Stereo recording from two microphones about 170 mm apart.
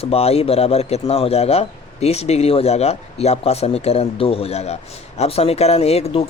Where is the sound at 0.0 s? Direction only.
35° left (ahead or behind).